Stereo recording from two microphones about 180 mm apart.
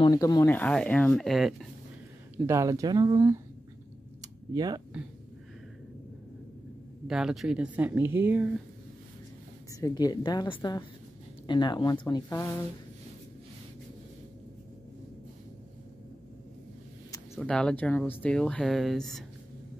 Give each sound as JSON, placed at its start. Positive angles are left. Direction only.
{"t": 0.0, "sound": "speech", "side_deg": 20}
{"t": 0.6, "sound": "speech", "side_deg": 5}
{"t": 2.3, "sound": "speech", "side_deg": -15}
{"t": 4.2, "sound": "a sound", "side_deg": -20}
{"t": 7.1, "sound": "speech", "side_deg": 0}
{"t": 9.7, "sound": "speech", "side_deg": 20}
{"t": 17.4, "sound": "speech", "side_deg": 5}